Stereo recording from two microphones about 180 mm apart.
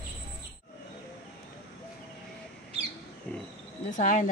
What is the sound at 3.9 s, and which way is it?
Speech, 45° left (ahead or behind).